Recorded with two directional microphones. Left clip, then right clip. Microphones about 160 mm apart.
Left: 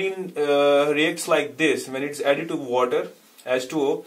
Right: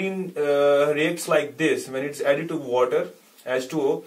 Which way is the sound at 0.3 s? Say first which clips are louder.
Left 1 dB; 35° left (ahead or behind).